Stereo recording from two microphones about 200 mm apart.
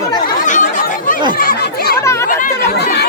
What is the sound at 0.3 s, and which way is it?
Chatter, 40° left (ahead or behind).